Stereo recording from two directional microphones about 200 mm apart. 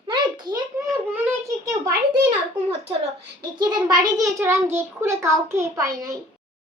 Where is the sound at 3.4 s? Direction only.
20° right (ahead or behind).